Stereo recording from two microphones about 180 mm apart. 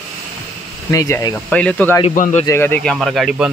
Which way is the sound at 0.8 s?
15° left (ahead or behind).